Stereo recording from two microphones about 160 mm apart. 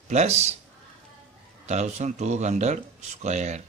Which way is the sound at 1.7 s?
45° right (ahead or behind).